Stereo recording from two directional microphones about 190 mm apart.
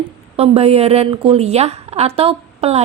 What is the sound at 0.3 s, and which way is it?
A woman's voice, 30° right (ahead or behind).